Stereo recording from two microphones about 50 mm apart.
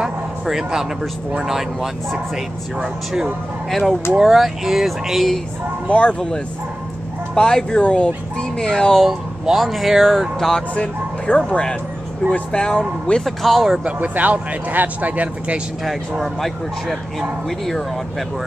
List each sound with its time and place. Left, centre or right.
0.0 s a sound: centre
1.4 s speech: centre
4.2 s speech: centre
5.9 s speech: left
9.0 s speech: centre
10.7 s speech: left
13.2 s speech: centre
14.0 s speech: right
15.8 s speech: centre